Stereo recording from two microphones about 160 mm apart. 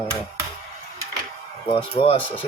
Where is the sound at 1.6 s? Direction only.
35° left (ahead or behind).